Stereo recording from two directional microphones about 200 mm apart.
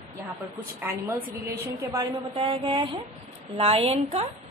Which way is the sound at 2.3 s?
25° right (ahead or behind).